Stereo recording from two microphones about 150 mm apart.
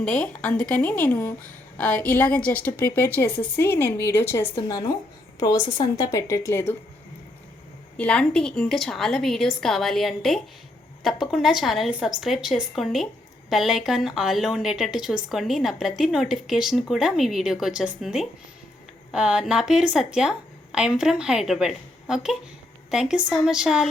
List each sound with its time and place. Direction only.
0.0 s a woman's voice: 5° left (ahead or behind)
5.7 s a woman's voice: 25° left (ahead or behind)
7.9 s speech: 5° left (ahead or behind)